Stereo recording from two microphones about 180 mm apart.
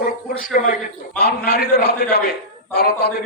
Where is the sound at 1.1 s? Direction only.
60° left (ahead or behind).